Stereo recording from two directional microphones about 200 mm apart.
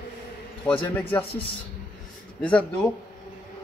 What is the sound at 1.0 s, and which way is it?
Speech, 10° left (ahead or behind).